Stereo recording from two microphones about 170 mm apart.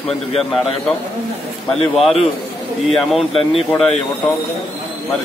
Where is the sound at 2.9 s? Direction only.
Centre (ahead or behind).